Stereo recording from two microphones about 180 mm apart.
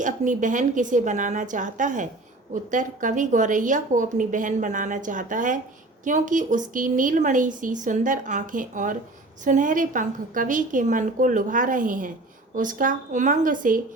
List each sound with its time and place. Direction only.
0.0 s a woman's voice: 45° right (ahead or behind)